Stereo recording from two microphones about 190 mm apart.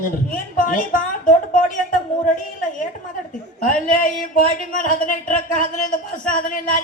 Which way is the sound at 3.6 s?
45° left (ahead or behind).